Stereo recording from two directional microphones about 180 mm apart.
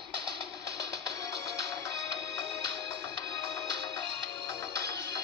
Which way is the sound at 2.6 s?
65° right (ahead or behind).